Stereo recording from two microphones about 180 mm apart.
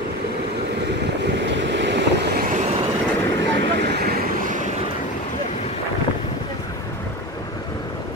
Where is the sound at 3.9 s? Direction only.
60° right (ahead or behind).